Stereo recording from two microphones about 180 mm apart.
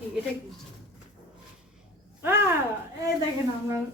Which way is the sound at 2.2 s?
15° right (ahead or behind).